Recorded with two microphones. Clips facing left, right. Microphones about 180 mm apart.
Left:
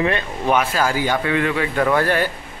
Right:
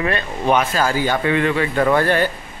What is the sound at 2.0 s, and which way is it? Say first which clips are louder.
Speech: right 2 dB; 10° left (ahead or behind).